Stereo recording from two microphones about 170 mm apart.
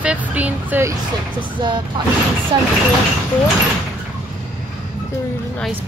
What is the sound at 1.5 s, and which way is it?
Speech, 25° right (ahead or behind).